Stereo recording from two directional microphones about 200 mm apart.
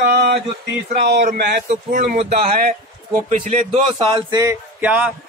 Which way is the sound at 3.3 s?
35° right (ahead or behind).